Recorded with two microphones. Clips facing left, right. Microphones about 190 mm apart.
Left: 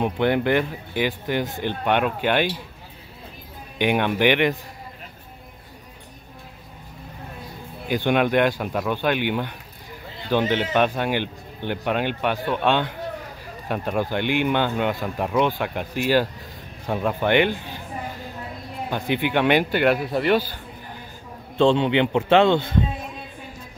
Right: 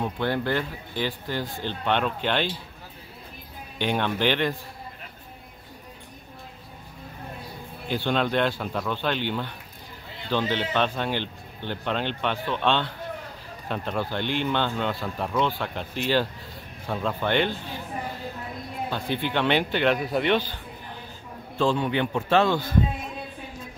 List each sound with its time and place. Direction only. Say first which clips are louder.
0.0 s speech: left 6 dB; 20° left (ahead or behind)
3.7 s speech: left 5 dB; 15° left (ahead or behind)
7.9 s speech: left 5 dB; 15° left (ahead or behind)
18.9 s speech: left 5 dB; 15° left (ahead or behind)
21.5 s speech: left 6 dB; 25° left (ahead or behind)